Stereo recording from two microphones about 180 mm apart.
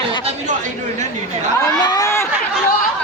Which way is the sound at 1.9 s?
15° left (ahead or behind).